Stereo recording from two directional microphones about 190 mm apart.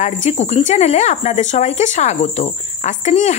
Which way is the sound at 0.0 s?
40° left (ahead or behind).